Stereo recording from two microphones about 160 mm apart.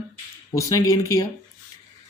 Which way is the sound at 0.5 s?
20° left (ahead or behind).